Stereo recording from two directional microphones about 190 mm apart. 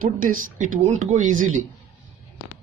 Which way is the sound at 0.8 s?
35° right (ahead or behind).